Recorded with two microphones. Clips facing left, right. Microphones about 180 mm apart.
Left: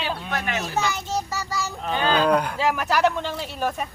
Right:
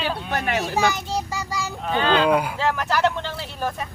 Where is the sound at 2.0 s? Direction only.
10° left (ahead or behind).